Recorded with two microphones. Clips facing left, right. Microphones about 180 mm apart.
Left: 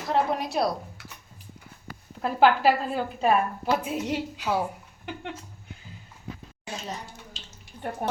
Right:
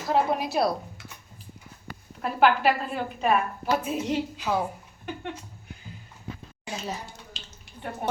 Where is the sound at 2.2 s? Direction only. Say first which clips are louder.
Left 1 dB; 30° left (ahead or behind).